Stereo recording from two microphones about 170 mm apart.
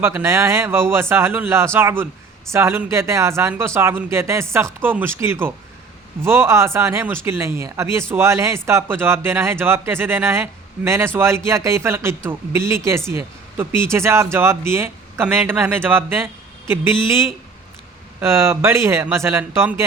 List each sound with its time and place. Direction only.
0.0 s speech: 15° right (ahead or behind)
18.2 s speech: 15° right (ahead or behind)